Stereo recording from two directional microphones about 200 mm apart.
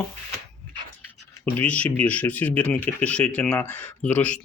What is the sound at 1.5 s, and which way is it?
Speech, 5° left (ahead or behind).